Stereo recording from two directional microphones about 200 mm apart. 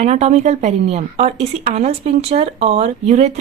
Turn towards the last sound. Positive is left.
turn(degrees=-35)  # may be behind; listen again after turning